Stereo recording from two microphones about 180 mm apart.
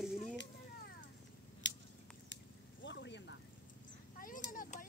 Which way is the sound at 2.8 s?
80° left.